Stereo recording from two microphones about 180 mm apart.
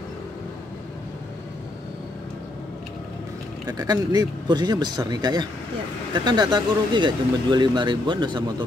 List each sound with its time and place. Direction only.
3.6 s speech: 20° right (ahead or behind)